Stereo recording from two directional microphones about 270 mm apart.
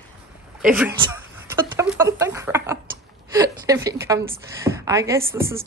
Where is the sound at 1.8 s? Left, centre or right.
Centre.